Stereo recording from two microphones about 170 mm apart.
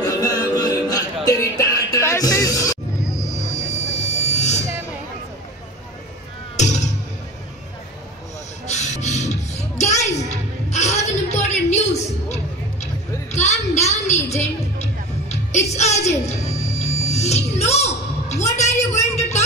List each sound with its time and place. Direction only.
0.0 s music: 20° left (ahead or behind)
3.2 s vehicle: 40° left (ahead or behind)
6.5 s music: 45° left (ahead or behind)
8.6 s music: 45° left (ahead or behind)
10.7 s a sound: 40° left (ahead or behind)
13.3 s music: 40° left (ahead or behind)
18.6 s a sound: 40° left (ahead or behind)